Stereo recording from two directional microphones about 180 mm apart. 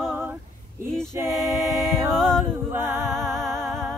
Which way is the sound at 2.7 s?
15° right (ahead or behind).